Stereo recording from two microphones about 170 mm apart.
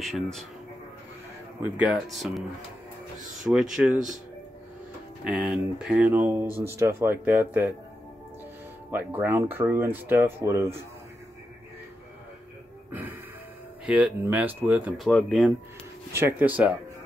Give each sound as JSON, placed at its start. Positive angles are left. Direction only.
{"t": 0.0, "sound": "speech", "side_deg": 0}
{"t": 1.6, "sound": "speech", "side_deg": -10}
{"t": 3.7, "sound": "speech", "side_deg": -5}
{"t": 5.2, "sound": "speech", "side_deg": -5}
{"t": 8.9, "sound": "speech", "side_deg": -10}
{"t": 13.8, "sound": "speech", "side_deg": -5}
{"t": 16.1, "sound": "speech", "side_deg": -15}